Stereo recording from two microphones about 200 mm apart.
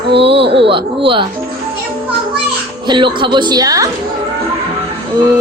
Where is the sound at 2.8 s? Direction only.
25° right (ahead or behind).